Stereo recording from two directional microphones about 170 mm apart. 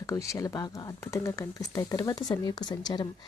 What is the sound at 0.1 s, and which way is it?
Speech, 20° left (ahead or behind).